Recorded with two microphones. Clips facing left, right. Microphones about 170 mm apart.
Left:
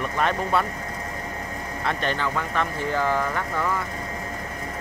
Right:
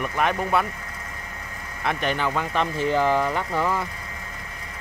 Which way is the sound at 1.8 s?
10° right (ahead or behind).